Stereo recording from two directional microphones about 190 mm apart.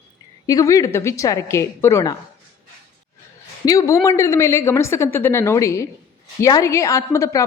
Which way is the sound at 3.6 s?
20° left (ahead or behind).